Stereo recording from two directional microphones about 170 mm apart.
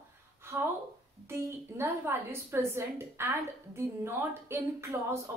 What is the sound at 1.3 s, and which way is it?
A woman's voice, 15° right (ahead or behind).